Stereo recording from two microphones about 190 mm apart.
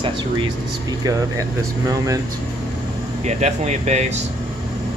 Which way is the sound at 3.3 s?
35° right (ahead or behind).